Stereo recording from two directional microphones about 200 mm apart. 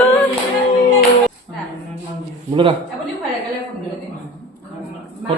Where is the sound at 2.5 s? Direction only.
25° right (ahead or behind).